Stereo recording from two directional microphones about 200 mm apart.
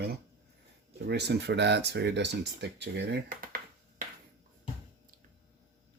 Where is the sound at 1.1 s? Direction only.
55° right (ahead or behind).